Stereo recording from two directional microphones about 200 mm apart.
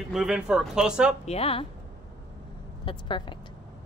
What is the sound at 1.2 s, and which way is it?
Speech, 30° left (ahead or behind).